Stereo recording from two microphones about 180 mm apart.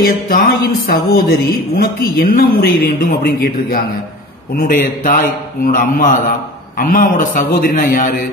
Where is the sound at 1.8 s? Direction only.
55° left (ahead or behind).